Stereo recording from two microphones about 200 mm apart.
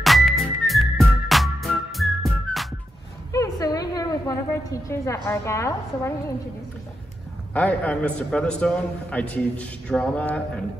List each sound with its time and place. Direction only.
0.0 s music: centre (ahead or behind)
3.3 s a woman's voice: 15° left (ahead or behind)
7.5 s a man's voice: 5° left (ahead or behind)